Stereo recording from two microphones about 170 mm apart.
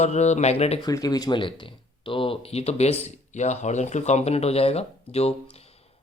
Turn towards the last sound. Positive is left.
turn(degrees=35)  # may be behind; listen again after turning